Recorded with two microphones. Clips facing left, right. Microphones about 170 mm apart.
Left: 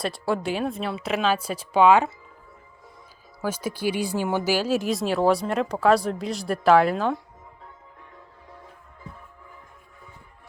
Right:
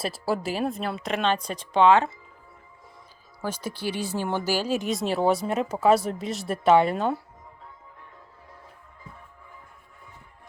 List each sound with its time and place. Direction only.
0.0 s speech: 5° right (ahead or behind)
3.4 s speech: 10° left (ahead or behind)